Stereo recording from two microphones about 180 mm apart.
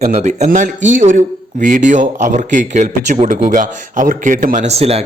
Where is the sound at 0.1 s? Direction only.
40° right (ahead or behind).